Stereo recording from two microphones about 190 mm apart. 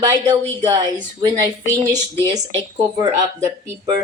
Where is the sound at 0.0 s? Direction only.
20° right (ahead or behind).